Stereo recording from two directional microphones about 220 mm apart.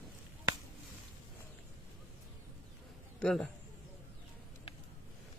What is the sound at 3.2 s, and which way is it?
Speech, 5° left (ahead or behind).